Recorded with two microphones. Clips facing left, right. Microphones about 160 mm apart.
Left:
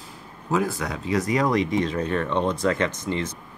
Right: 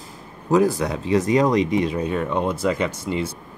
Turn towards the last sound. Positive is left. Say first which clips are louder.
# right 2 dB
turn(degrees=-10)  # may be behind; listen again after turning